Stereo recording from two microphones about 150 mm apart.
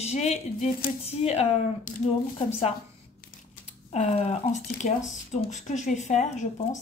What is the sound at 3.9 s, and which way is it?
A woman's voice, 45° left (ahead or behind).